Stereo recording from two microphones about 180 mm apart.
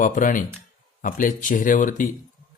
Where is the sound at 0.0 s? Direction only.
45° left (ahead or behind).